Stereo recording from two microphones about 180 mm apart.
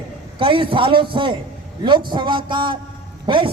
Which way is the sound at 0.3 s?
30° right (ahead or behind).